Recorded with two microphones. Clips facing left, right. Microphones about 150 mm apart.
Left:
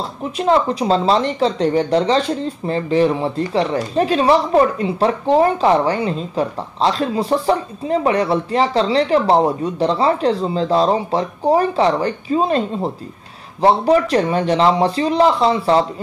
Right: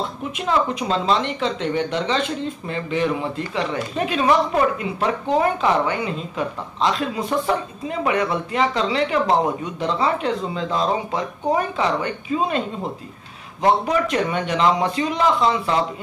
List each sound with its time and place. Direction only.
0.4 s speech: 35° left (ahead or behind)